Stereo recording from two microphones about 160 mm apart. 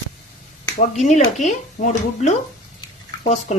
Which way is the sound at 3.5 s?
45° left (ahead or behind).